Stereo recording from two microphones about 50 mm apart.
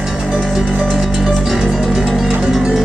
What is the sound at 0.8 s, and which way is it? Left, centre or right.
Music, centre.